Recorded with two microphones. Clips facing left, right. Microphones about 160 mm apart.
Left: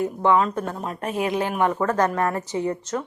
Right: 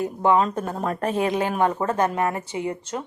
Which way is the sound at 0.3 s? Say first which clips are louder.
Even; 35° right (ahead or behind).